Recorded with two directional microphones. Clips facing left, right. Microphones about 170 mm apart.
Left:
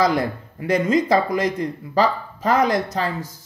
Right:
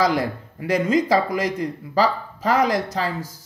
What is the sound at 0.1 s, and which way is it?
Speech, 25° left (ahead or behind).